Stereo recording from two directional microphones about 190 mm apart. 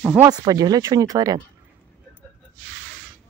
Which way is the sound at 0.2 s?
20° right (ahead or behind).